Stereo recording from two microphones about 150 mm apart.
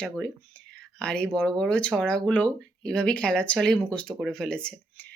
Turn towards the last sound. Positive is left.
turn(degrees=5)  # may be behind; listen again after turning